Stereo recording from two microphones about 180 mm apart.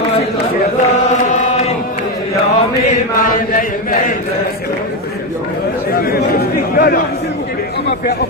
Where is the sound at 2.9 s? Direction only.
45° left (ahead or behind).